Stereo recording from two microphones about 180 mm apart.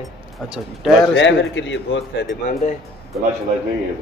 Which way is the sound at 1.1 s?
90° left.